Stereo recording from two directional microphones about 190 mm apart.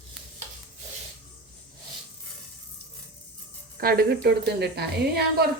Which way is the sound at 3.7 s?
50° right (ahead or behind).